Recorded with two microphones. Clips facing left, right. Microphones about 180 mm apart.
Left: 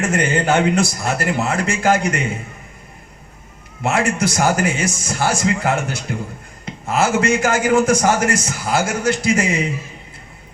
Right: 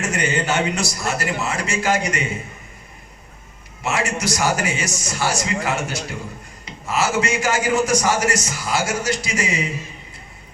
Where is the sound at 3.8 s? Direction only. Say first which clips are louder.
Left 5 dB; 55° left (ahead or behind).